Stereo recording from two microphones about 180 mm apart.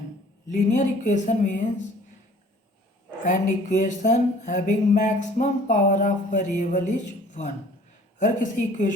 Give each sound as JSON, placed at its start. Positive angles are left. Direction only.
{"t": 0.5, "sound": "speech", "side_deg": 45}
{"t": 3.2, "sound": "speech", "side_deg": 45}